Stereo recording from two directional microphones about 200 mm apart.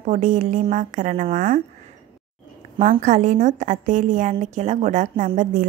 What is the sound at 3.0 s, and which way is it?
A woman's voice, 35° right (ahead or behind).